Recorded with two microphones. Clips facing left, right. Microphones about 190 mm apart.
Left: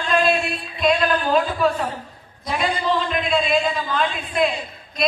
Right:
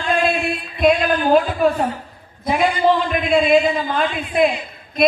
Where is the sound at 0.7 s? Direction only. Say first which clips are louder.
Right 3 dB; 55° right (ahead or behind).